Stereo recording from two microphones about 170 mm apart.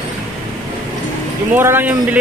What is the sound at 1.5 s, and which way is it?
Speech, 10° right (ahead or behind).